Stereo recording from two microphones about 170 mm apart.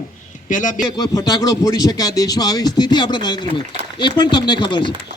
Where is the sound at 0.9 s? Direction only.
25° left (ahead or behind).